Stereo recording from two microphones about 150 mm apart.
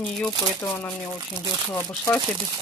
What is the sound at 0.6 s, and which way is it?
Speech, 15° left (ahead or behind).